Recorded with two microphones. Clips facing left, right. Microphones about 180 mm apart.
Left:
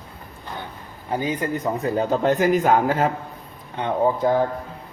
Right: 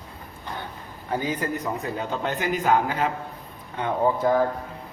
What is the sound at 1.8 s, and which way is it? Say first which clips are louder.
Speech: left 8 dB; 35° left (ahead or behind).